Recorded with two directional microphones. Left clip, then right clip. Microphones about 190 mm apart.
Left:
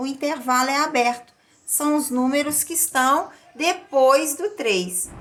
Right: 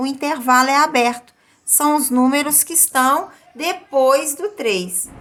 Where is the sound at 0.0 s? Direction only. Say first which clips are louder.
Right 5 dB; 35° right (ahead or behind).